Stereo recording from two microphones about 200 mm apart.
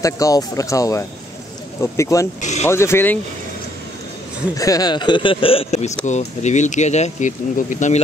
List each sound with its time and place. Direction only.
0.0 s speech: 15° left (ahead or behind)
4.6 s speech: 15° left (ahead or behind); by 8.0 s 40° left (ahead or behind)